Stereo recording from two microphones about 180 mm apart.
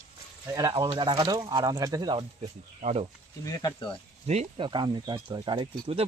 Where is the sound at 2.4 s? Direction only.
35° right (ahead or behind).